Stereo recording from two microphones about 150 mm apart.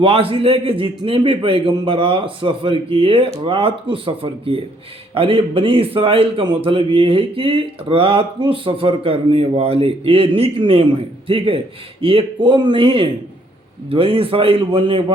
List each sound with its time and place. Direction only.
0.0 s a man's voice: 40° right (ahead or behind)